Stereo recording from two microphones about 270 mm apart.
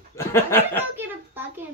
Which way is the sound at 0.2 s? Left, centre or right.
Centre.